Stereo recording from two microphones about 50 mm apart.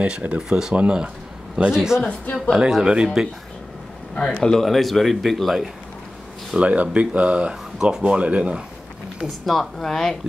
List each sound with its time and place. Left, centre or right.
0.0 s speech: right
0.4 s speech: centre
0.7 s speech: right
1.7 s speech: centre
2.0 s a woman's voice: left
2.5 s speech: centre
4.1 s speech: centre
4.6 s speech: centre
6.6 s speech: right
9.2 s speech: centre